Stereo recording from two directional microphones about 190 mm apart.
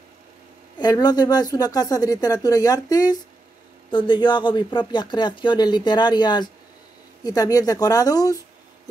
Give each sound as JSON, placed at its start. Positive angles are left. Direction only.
{"t": 0.7, "sound": "speech", "side_deg": 20}